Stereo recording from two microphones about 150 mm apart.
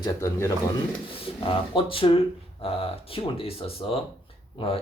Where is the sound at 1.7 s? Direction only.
35° left (ahead or behind).